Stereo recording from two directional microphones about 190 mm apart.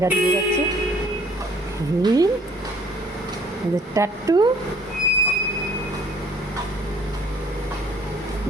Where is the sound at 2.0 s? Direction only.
20° right (ahead or behind).